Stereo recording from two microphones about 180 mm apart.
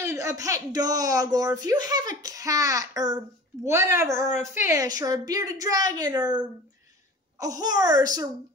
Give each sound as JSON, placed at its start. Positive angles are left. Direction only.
{"t": 0.0, "sound": "speech", "side_deg": -15}